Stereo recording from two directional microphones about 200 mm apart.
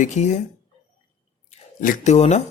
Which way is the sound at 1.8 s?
40° left (ahead or behind).